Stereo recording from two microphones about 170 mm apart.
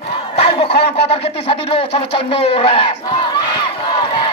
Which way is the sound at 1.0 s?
35° left (ahead or behind).